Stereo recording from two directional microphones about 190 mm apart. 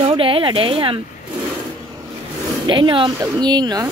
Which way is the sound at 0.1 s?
30° right (ahead or behind).